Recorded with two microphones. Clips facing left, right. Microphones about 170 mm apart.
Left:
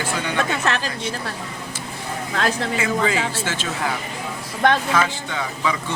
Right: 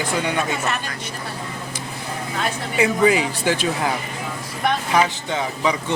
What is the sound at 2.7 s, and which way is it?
Speech, 20° right (ahead or behind).